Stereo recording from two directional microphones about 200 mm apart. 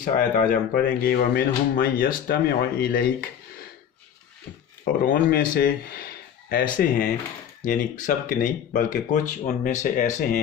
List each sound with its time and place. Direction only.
0.0 s speech: 45° left (ahead or behind)
5.0 s speech: 45° left (ahead or behind)